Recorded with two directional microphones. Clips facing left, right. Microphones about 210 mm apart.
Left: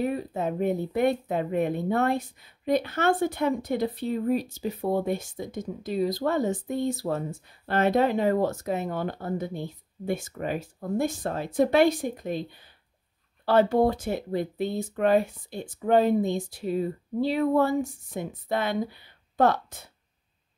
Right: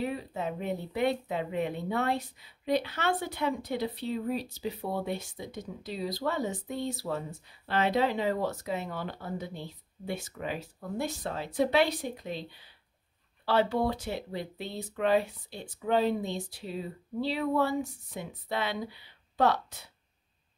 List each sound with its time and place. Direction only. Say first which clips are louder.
0.0 s speech: left 5 dB; 50° left (ahead or behind)